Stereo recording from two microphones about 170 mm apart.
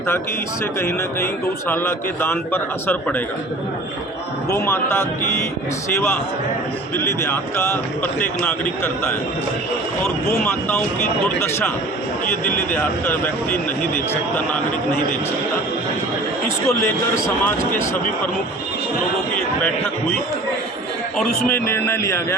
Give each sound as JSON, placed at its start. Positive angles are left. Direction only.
{"t": 1.6, "sound": "a man's voice", "side_deg": 15}
{"t": 4.5, "sound": "a man's voice", "side_deg": 15}
{"t": 6.9, "sound": "a man's voice", "side_deg": 15}
{"t": 10.4, "sound": "a man's voice", "side_deg": 10}
{"t": 12.5, "sound": "a man's voice", "side_deg": 10}
{"t": 16.6, "sound": "a man's voice", "side_deg": 15}
{"t": 21.2, "sound": "a man's voice", "side_deg": 10}